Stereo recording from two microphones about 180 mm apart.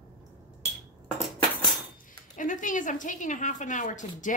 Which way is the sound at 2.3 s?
45° left (ahead or behind).